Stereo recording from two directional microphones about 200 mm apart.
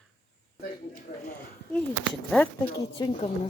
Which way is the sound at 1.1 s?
50° left (ahead or behind).